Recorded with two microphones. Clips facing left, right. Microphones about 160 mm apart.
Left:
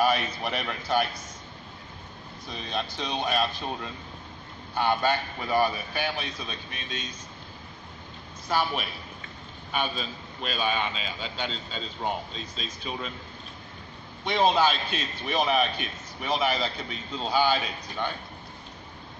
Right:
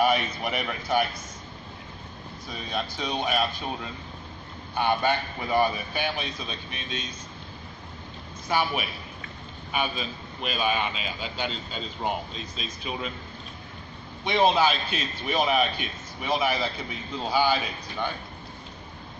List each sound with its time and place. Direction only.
0.0 s a man's voice: 15° right (ahead or behind)
2.5 s a man's voice: 5° right (ahead or behind)
8.5 s a man's voice: 10° right (ahead or behind)
14.2 s a man's voice: 5° right (ahead or behind)